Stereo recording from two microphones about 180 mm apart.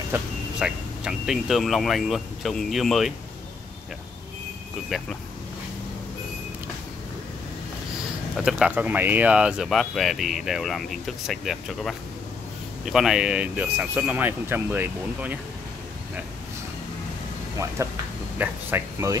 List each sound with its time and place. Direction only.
0.1 s speech: 5° right (ahead or behind)
8.4 s speech: 5° right (ahead or behind)
17.8 s speech: 15° right (ahead or behind)